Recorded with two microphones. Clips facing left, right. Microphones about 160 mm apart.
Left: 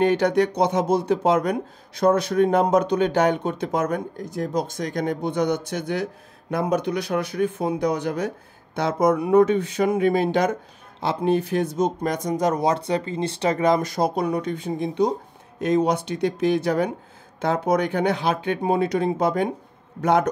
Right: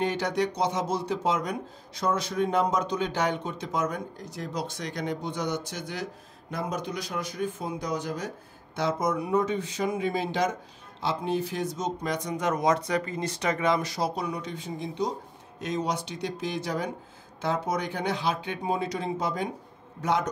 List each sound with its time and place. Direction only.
0.0 s speech: 60° left (ahead or behind)